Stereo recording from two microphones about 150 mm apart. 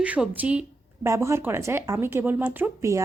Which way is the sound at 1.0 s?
20° right (ahead or behind).